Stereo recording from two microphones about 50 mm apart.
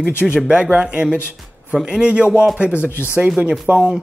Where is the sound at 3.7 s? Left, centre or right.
Centre.